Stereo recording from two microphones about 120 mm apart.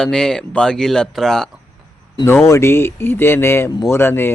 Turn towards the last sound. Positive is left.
turn(degrees=20)  # may be behind; listen again after turning